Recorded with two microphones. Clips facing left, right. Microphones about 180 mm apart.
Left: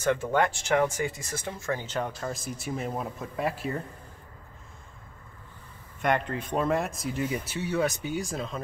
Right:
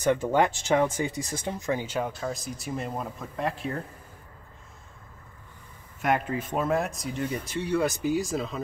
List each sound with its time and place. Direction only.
0.0 s speech: 15° right (ahead or behind); by 3.7 s 5° left (ahead or behind)
5.9 s speech: 5° right (ahead or behind)